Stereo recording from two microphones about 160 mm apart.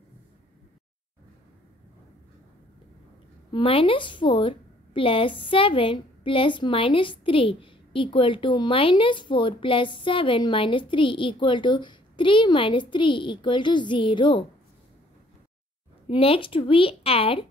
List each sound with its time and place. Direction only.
3.5 s a woman's voice: 35° left (ahead or behind)
16.1 s a woman's voice: 35° left (ahead or behind)